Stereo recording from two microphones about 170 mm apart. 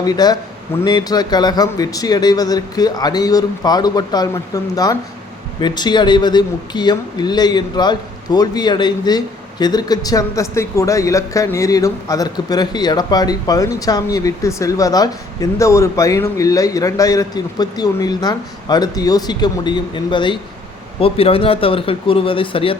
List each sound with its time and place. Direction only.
0.0 s speech: 25° left (ahead or behind)